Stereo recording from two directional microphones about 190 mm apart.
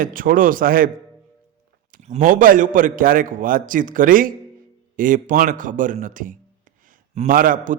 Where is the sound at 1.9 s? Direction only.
40° right (ahead or behind).